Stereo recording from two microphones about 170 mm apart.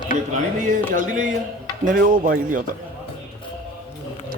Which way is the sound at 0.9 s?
50° right (ahead or behind).